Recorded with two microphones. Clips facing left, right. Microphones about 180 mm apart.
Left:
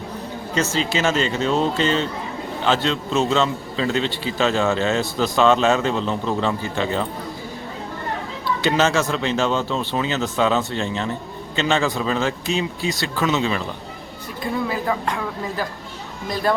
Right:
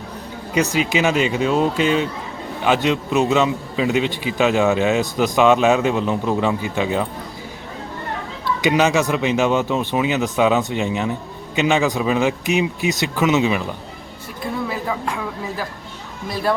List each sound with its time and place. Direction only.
0.5 s a man's voice: 15° right (ahead or behind)
8.6 s a man's voice: 15° right (ahead or behind)
14.4 s speech: centre (ahead or behind)